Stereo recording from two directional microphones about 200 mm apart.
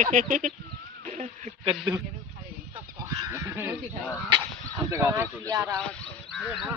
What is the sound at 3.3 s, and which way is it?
Speech, 15° right (ahead or behind).